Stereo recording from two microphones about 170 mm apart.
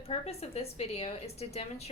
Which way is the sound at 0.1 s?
35° left (ahead or behind).